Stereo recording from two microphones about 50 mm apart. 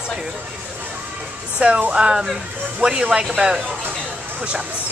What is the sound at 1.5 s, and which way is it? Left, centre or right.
Speech, right.